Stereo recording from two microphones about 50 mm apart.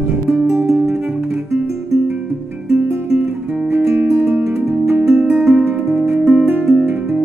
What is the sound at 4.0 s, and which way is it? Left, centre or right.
Music, right.